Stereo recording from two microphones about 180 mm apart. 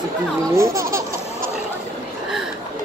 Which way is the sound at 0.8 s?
50° right (ahead or behind).